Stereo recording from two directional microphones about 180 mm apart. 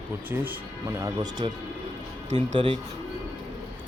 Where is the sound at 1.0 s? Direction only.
25° right (ahead or behind).